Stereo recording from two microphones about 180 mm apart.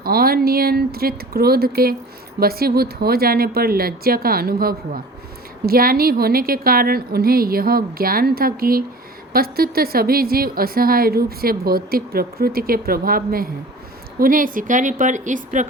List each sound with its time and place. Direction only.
0.0 s a woman's voice: 55° right (ahead or behind)